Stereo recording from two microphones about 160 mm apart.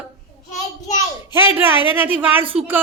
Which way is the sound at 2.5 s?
5° right (ahead or behind).